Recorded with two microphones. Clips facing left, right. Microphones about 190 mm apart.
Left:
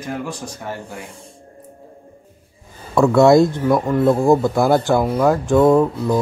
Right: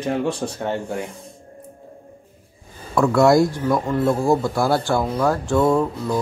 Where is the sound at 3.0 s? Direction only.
25° left (ahead or behind).